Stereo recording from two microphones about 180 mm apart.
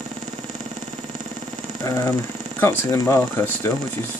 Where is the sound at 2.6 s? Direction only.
15° left (ahead or behind).